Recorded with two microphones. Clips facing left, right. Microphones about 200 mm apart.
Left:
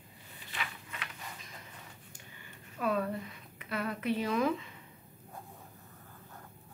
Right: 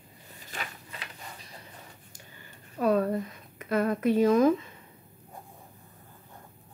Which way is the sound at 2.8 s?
40° right (ahead or behind).